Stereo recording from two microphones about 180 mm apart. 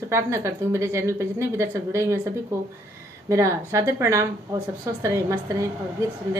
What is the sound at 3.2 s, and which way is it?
A woman's voice, 15° right (ahead or behind).